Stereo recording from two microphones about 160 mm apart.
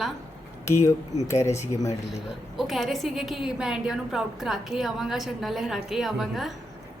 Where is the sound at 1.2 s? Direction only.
20° left (ahead or behind).